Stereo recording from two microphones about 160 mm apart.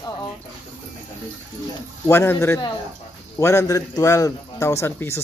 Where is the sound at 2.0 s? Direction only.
15° left (ahead or behind).